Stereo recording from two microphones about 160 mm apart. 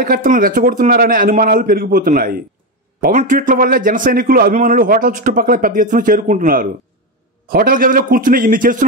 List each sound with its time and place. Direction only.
0.0 s speech: 60° right (ahead or behind)
3.0 s speech: 50° right (ahead or behind)